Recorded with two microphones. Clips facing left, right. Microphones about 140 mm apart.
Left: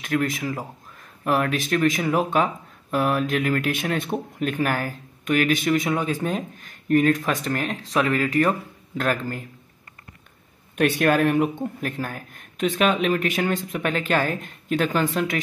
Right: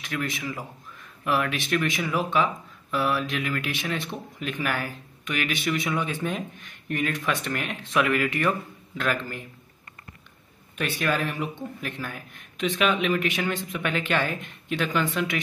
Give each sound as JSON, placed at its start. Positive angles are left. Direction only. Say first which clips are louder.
{"t": 0.0, "sound": "speech", "louder": "left 7 dB", "side_deg": 45}
{"t": 10.8, "sound": "speech", "louder": "left 8 dB", "side_deg": 55}